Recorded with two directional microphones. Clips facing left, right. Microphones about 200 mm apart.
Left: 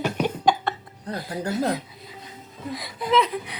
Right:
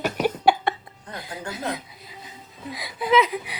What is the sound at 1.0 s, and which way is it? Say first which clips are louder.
Music: left 6 dB; 35° left (ahead or behind).